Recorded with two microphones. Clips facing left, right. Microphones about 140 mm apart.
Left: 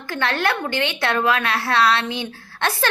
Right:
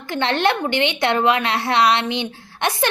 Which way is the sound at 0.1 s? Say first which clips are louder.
Right 3 dB; 20° right (ahead or behind).